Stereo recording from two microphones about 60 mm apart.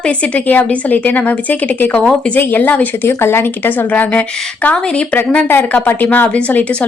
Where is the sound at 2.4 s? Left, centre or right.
Left.